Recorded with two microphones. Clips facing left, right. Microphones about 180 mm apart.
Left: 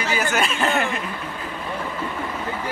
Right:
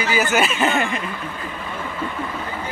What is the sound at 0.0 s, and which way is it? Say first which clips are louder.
Speech: right 3 dB; 5° right (ahead or behind).